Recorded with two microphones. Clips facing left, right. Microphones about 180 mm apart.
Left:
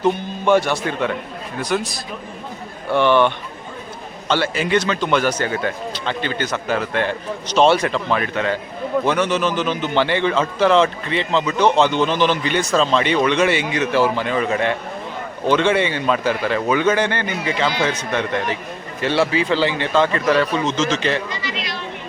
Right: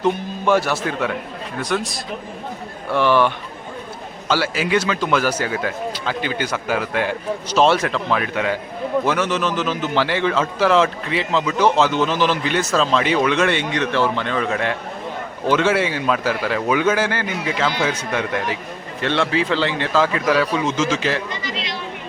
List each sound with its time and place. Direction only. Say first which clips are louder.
0.0 s a man's voice: left 1 dB; centre (ahead or behind)
21.2 s speech: even; 55° right (ahead or behind)